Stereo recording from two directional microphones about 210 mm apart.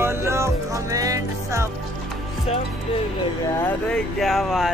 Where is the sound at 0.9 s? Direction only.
15° right (ahead or behind).